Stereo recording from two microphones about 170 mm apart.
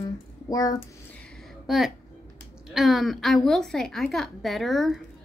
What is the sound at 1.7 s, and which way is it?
A woman's voice, centre (ahead or behind).